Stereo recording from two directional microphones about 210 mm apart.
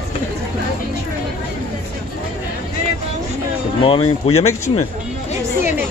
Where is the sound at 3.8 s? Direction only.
25° left (ahead or behind).